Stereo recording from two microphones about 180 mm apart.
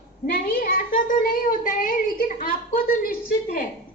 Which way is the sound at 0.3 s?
50° left (ahead or behind).